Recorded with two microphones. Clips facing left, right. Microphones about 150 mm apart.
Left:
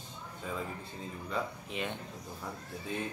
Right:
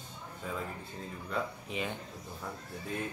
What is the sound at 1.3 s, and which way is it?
Speech, centre (ahead or behind).